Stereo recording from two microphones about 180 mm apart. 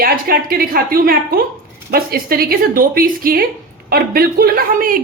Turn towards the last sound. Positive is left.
turn(degrees=-50)  # may be behind; listen again after turning